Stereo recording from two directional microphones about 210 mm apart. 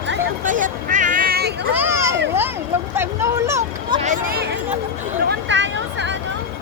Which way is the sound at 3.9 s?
35° right (ahead or behind).